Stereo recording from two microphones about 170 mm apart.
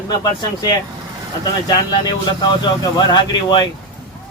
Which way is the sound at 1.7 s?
25° left (ahead or behind).